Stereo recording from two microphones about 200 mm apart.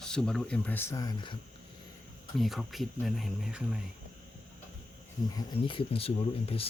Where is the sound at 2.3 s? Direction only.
Centre (ahead or behind).